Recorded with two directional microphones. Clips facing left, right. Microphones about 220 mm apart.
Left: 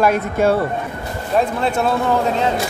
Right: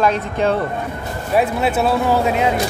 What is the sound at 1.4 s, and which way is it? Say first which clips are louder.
Speech: right 1 dB; 5° right (ahead or behind).